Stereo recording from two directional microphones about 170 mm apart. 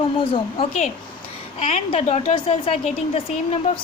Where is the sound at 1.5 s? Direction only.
40° left (ahead or behind).